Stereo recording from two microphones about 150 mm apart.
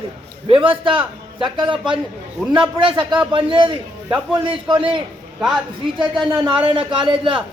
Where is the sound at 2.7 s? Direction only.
35° right (ahead or behind).